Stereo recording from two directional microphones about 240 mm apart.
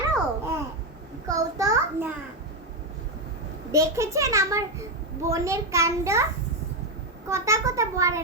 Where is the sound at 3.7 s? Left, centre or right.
Centre.